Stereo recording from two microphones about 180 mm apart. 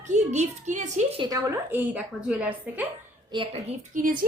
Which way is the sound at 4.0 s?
50° right (ahead or behind).